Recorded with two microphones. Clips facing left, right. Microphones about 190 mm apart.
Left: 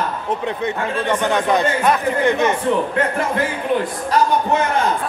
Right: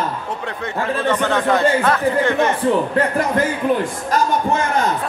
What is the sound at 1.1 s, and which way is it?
Speech, 15° left (ahead or behind).